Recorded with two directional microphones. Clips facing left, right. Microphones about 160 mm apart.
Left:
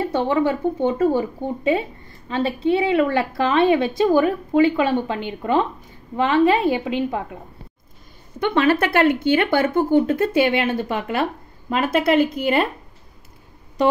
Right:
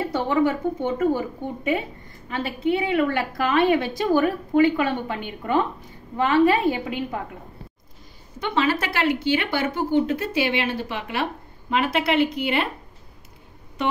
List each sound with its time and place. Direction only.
0.1 s speech: 25° left (ahead or behind)
8.4 s a woman's voice: 60° left (ahead or behind); by 12.6 s 40° left (ahead or behind)